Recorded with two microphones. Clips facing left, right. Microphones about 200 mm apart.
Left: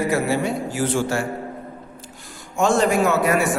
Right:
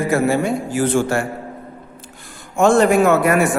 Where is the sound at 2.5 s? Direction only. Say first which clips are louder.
Right 5 dB; 55° right (ahead or behind).